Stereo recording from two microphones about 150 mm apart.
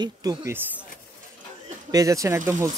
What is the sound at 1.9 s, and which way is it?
Speech, 20° right (ahead or behind).